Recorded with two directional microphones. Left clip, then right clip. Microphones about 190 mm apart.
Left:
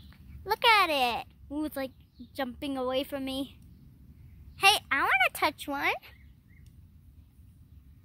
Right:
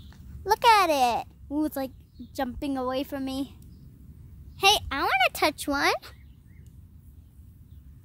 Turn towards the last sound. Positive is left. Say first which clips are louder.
# right 5 dB
turn(degrees=-30)  # may be behind; listen again after turning